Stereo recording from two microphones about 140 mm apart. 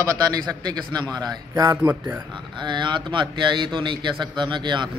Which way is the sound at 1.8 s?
10° right (ahead or behind).